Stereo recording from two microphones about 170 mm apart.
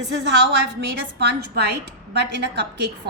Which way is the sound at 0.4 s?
85° right.